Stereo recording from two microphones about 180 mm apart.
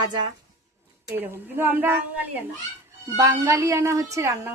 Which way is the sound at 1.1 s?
10° right (ahead or behind).